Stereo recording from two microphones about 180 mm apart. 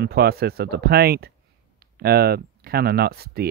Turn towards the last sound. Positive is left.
turn(degrees=-60)  # may be behind; listen again after turning